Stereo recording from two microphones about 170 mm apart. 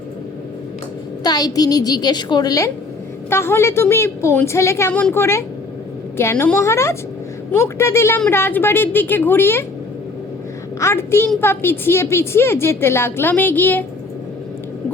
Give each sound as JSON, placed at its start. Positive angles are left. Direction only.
{"t": 1.2, "sound": "a woman's voice", "side_deg": 25}
{"t": 10.8, "sound": "a woman's voice", "side_deg": 15}